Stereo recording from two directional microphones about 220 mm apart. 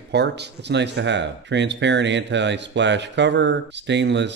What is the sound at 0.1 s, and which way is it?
Speech, 50° right (ahead or behind).